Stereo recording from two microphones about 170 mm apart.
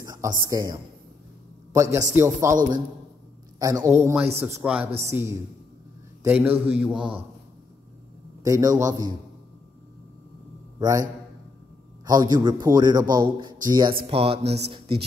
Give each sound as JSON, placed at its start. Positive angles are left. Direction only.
{"t": 0.0, "sound": "a man's voice", "side_deg": -20}
{"t": 3.5, "sound": "a man's voice", "side_deg": -20}
{"t": 8.5, "sound": "a man's voice", "side_deg": -20}
{"t": 10.8, "sound": "a man's voice", "side_deg": -20}
{"t": 12.1, "sound": "a man's voice", "side_deg": -25}
{"t": 14.0, "sound": "speech", "side_deg": -35}